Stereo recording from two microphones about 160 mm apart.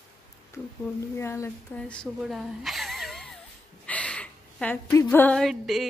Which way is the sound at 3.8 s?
5° left (ahead or behind).